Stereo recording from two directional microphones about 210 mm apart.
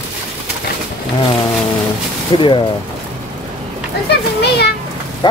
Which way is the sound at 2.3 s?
25° left (ahead or behind).